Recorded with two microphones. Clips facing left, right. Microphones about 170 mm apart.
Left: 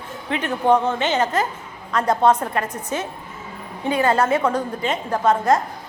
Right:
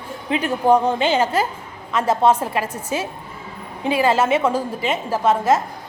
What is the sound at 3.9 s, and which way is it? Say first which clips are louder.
Speech: right 1 dB; 25° right (ahead or behind).